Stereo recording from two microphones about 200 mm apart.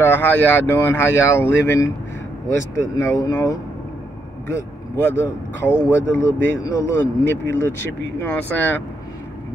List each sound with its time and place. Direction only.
0.0 s speech: 10° left (ahead or behind)
3.0 s speech: 15° left (ahead or behind)